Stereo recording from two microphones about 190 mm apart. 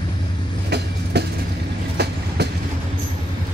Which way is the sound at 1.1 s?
60° right (ahead or behind).